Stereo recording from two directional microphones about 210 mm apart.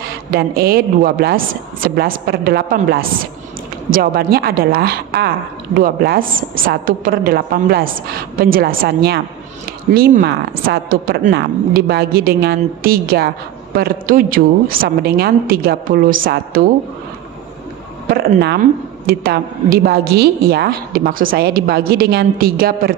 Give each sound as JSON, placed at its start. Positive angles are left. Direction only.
{"t": 0.3, "sound": "a woman's voice", "side_deg": -45}
{"t": 18.1, "sound": "a woman's voice", "side_deg": -50}